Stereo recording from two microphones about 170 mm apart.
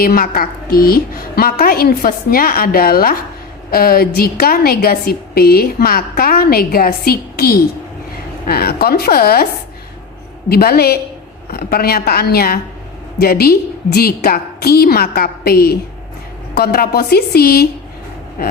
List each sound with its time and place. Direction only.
0.0 s a woman's voice: 60° left (ahead or behind)
10.5 s a woman's voice: 65° left (ahead or behind)